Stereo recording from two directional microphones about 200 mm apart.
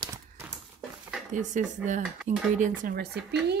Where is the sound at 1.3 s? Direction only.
40° right (ahead or behind).